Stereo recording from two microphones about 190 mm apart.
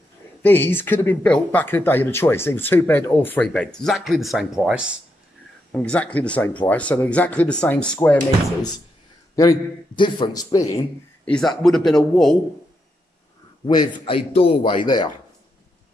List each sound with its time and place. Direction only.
0.4 s speech: 10° left (ahead or behind); by 4.9 s 5° right (ahead or behind)
5.7 s speech: 10° left (ahead or behind)
9.3 s a man's voice: 20° left (ahead or behind)
11.2 s a man's voice: 5° left (ahead or behind)
13.7 s a man's voice: 25° left (ahead or behind)